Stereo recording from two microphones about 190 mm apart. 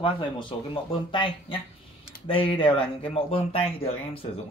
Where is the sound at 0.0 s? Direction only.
25° left (ahead or behind).